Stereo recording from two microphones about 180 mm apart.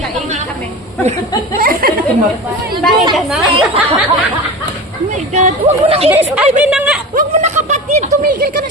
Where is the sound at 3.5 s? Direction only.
30° right (ahead or behind).